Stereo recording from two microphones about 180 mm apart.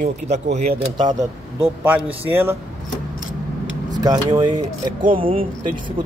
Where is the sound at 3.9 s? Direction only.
20° right (ahead or behind).